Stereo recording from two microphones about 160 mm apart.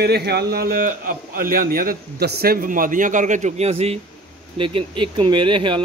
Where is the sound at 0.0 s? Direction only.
90° right.